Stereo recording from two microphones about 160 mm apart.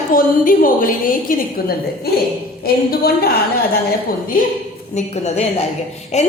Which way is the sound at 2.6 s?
70° left (ahead or behind).